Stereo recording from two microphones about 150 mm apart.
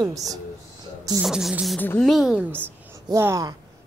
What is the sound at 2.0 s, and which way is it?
Beatboxing, centre (ahead or behind).